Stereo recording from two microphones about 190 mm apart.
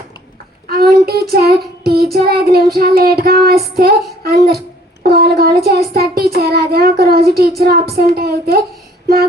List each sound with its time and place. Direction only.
0.7 s child singing: 55° right (ahead or behind)